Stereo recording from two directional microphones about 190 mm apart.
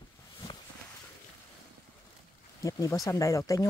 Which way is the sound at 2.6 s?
20° left (ahead or behind).